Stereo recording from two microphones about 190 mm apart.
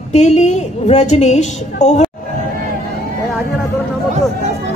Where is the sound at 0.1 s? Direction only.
35° left (ahead or behind).